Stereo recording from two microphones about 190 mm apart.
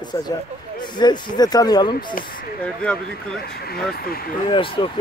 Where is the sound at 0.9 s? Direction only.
20° left (ahead or behind).